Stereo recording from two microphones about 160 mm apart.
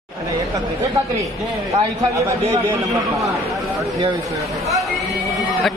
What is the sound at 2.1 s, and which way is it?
Speech, 20° right (ahead or behind).